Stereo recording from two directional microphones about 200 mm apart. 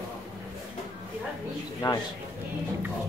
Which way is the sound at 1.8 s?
20° left (ahead or behind).